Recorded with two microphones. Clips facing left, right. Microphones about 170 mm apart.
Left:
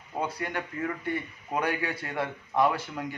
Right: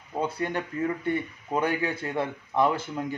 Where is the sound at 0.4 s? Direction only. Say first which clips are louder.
Right 4 dB; 25° right (ahead or behind).